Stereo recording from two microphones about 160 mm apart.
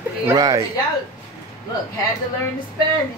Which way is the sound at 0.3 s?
20° right (ahead or behind).